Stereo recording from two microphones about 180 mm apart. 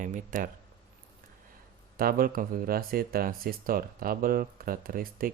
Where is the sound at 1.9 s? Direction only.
55° right (ahead or behind).